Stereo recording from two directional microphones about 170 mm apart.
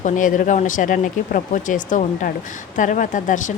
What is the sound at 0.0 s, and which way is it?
A woman's voice, 50° left (ahead or behind).